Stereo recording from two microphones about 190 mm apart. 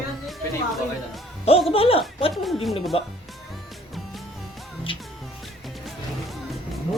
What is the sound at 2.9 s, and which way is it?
Speech, 30° left (ahead or behind).